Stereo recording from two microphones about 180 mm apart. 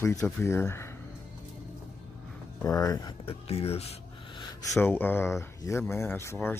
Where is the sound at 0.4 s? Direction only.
15° left (ahead or behind).